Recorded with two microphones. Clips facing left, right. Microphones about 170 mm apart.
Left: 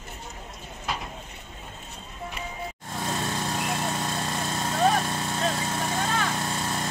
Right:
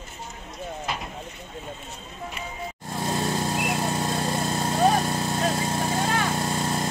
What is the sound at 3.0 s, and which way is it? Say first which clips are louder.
Vehicle: right 4 dB; 30° right (ahead or behind).